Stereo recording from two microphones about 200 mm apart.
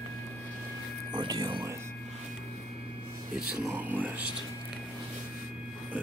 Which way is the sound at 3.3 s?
5° right (ahead or behind).